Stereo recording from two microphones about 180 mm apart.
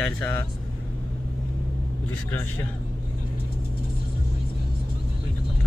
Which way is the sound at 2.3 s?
10° left (ahead or behind).